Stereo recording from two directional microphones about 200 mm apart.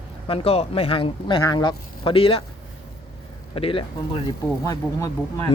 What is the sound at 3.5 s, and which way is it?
Speech, 25° left (ahead or behind).